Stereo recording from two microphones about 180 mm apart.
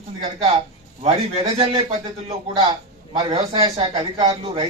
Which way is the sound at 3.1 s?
30° right (ahead or behind).